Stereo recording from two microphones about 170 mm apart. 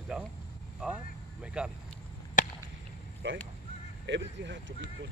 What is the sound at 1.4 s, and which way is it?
Vehicle, 5° right (ahead or behind).